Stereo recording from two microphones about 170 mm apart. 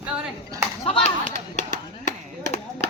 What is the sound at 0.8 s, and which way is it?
Speech, 35° left (ahead or behind).